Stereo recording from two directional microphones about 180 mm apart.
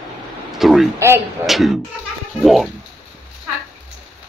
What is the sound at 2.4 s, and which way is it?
Speech, centre (ahead or behind).